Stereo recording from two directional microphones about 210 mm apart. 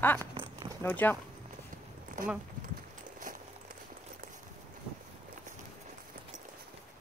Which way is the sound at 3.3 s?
40° right (ahead or behind).